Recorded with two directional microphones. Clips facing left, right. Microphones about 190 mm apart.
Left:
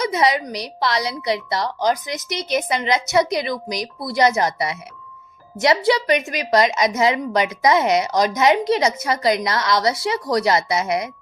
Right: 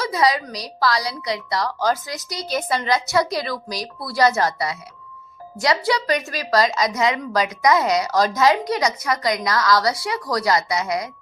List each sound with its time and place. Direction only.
0.0 s a woman's voice: 20° left (ahead or behind)